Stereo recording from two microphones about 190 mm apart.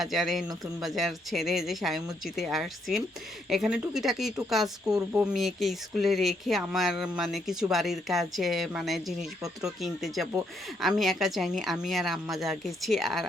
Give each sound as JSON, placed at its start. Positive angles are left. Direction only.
{"t": 0.0, "sound": "speech", "side_deg": 0}
{"t": 4.9, "sound": "speech", "side_deg": -20}
{"t": 5.2, "sound": "speech", "side_deg": 0}